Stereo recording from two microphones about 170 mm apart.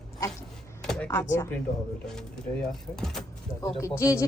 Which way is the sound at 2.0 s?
5° left (ahead or behind).